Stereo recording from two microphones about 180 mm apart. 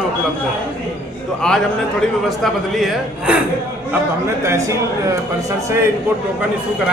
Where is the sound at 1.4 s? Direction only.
5° left (ahead or behind).